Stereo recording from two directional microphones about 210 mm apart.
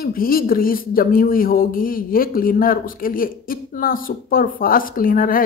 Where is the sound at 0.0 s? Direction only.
45° left (ahead or behind).